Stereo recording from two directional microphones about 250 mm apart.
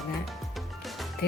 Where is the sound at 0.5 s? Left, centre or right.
Centre.